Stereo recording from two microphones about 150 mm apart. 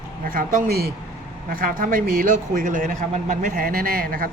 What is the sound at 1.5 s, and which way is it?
A man's voice, 70° right (ahead or behind).